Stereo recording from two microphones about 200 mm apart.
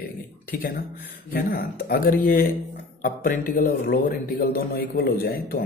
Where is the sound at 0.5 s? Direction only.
45° left (ahead or behind).